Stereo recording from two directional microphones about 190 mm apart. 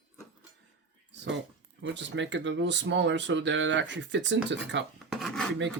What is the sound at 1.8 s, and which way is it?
Speech, 70° right (ahead or behind).